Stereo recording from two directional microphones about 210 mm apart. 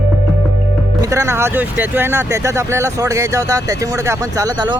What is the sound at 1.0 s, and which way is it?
Speech, 15° right (ahead or behind).